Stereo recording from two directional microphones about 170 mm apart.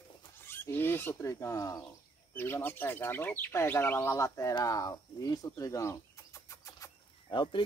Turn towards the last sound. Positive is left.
turn(degrees=25)  # may be behind; listen again after turning